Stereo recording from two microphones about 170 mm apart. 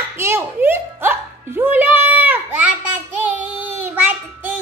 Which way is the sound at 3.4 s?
10° right (ahead or behind).